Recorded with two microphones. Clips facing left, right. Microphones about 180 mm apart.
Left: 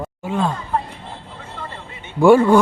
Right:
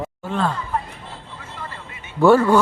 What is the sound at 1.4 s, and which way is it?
Vehicle, 30° left (ahead or behind).